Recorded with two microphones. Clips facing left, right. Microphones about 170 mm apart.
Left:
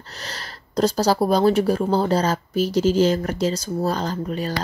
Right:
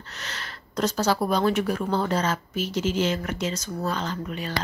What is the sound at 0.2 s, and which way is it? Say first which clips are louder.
Speech: left 3 dB; 35° left (ahead or behind).